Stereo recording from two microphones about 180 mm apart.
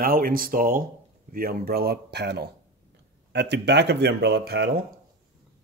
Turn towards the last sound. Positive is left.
turn(degrees=-65)  # may be behind; listen again after turning